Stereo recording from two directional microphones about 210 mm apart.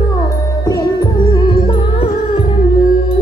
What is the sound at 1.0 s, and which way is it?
Music, 20° left (ahead or behind).